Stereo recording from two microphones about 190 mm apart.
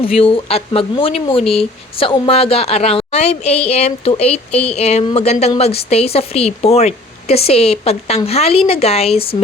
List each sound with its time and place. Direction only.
0.0 s a woman's voice: 30° left (ahead or behind)